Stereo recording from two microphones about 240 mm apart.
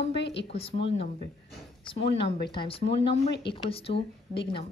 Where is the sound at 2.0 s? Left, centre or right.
Left.